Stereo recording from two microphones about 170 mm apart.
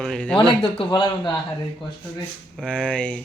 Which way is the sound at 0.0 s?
5° left (ahead or behind).